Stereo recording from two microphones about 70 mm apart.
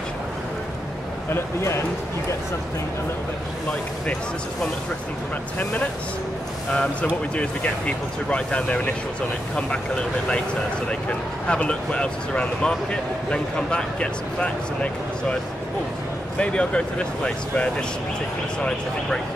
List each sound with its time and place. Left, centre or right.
1.3 s speech: left
5.6 s speech: centre
10.9 s speech: centre
16.3 s speech: centre